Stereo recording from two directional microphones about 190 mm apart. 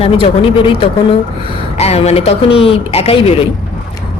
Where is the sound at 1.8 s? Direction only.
35° left (ahead or behind).